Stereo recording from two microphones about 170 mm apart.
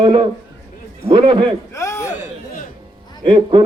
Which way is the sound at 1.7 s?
15° left (ahead or behind).